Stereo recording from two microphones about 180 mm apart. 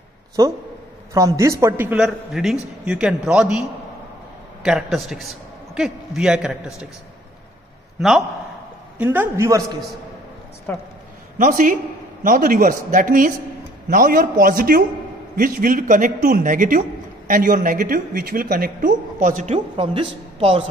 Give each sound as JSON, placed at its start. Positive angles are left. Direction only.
{"t": 1.1, "sound": "a man's voice", "side_deg": -15}
{"t": 4.6, "sound": "a man's voice", "side_deg": 0}
{"t": 8.9, "sound": "a man's voice", "side_deg": -10}
{"t": 10.7, "sound": "speech", "side_deg": 10}
{"t": 11.3, "sound": "a woman's voice", "side_deg": -45}